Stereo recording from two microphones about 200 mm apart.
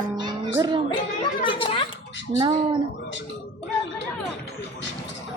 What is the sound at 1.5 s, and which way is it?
Speech, 25° left (ahead or behind).